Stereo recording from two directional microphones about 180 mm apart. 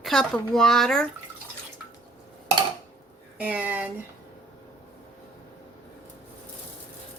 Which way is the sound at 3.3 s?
10° right (ahead or behind).